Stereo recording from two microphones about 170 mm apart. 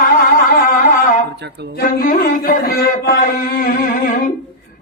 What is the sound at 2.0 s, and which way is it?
Carnatic music, 55° left (ahead or behind).